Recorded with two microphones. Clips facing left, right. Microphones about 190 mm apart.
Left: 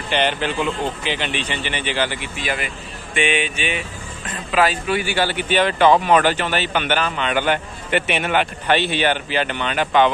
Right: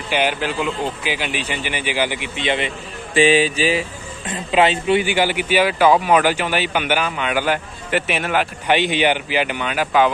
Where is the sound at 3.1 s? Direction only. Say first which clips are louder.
Right 7 dB; 35° right (ahead or behind).